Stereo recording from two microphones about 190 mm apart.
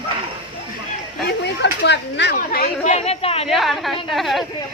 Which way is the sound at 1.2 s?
60° left (ahead or behind).